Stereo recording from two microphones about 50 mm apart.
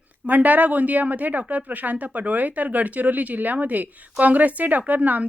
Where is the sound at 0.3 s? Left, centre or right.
Right.